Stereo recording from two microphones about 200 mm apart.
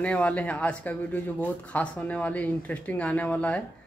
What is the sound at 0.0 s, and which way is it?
Speech, 5° left (ahead or behind).